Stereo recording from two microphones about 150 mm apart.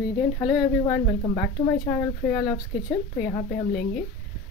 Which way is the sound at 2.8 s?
65° left (ahead or behind).